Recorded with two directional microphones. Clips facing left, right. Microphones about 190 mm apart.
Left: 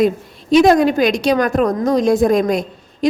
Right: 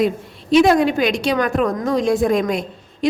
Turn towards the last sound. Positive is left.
turn(degrees=40)  # may be behind; listen again after turning